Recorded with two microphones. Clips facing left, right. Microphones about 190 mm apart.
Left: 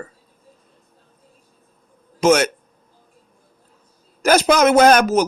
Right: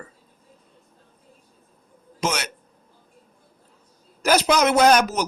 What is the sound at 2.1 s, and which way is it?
Speech, 50° left (ahead or behind).